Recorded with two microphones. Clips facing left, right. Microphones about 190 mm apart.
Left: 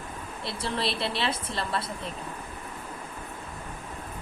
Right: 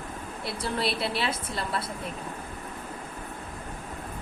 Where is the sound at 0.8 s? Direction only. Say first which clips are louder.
Right 2 dB; 5° right (ahead or behind).